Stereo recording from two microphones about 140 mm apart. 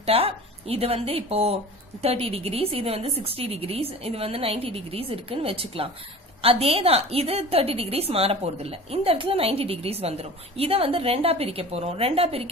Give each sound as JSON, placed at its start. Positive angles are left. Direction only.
{"t": 0.0, "sound": "a woman's voice", "side_deg": -45}